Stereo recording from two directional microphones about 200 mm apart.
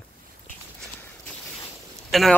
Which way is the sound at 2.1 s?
Centre (ahead or behind).